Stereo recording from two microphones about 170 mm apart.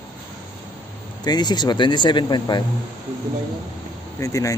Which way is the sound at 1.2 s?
25° left (ahead or behind).